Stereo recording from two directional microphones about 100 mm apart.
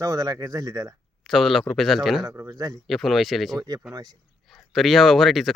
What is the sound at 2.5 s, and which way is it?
Speech, 40° right (ahead or behind).